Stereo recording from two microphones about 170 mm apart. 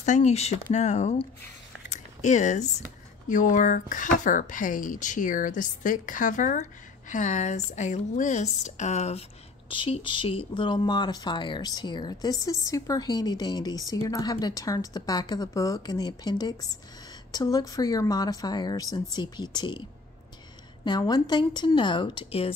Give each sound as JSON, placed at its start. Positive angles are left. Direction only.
{"t": 0.0, "sound": "a woman's voice", "side_deg": 45}
{"t": 1.9, "sound": "a sound", "side_deg": 45}
{"t": 3.3, "sound": "a woman's voice", "side_deg": 50}
{"t": 20.8, "sound": "speech", "side_deg": 25}